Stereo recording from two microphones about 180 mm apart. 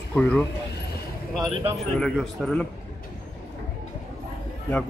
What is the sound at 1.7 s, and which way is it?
Speech, centre (ahead or behind).